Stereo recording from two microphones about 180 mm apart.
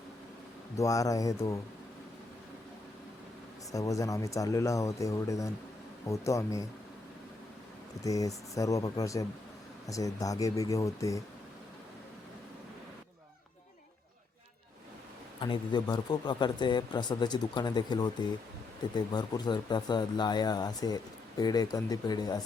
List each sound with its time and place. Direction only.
0.8 s speech: 20° left (ahead or behind)
3.7 s speech: 20° left (ahead or behind)
8.0 s speech: 20° left (ahead or behind)
15.4 s speech: 25° left (ahead or behind)